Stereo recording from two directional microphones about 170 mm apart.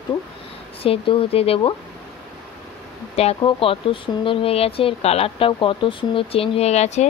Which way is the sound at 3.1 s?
35° left (ahead or behind).